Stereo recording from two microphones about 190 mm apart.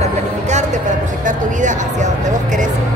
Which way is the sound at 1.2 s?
40° right (ahead or behind).